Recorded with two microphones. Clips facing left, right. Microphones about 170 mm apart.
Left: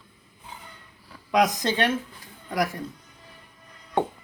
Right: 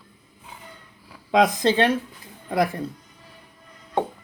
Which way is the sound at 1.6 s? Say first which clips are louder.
Right 5 dB; 30° right (ahead or behind).